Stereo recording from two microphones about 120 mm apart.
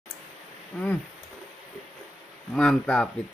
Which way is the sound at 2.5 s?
5° left (ahead or behind).